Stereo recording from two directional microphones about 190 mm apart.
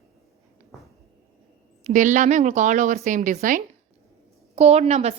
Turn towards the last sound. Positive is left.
turn(degrees=-35)  # may be behind; listen again after turning